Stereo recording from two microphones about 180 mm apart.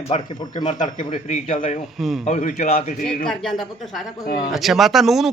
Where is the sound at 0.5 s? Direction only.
40° left (ahead or behind).